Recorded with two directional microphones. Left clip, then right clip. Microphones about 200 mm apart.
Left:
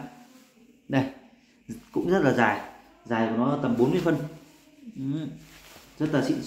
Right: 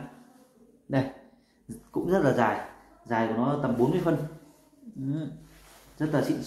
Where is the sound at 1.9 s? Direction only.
5° left (ahead or behind).